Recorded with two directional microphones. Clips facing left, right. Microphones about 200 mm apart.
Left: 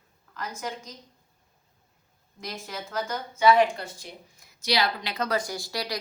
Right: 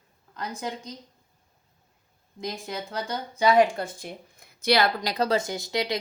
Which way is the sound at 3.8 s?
50° right (ahead or behind).